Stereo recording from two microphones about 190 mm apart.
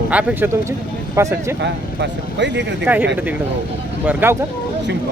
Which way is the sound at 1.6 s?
65° right (ahead or behind).